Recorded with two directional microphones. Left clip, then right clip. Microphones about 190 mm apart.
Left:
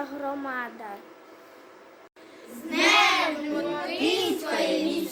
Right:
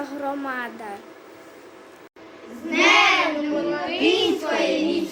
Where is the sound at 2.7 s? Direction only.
25° left (ahead or behind).